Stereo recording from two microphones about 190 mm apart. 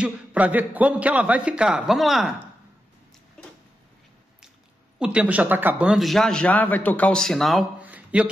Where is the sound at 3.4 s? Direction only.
5° left (ahead or behind).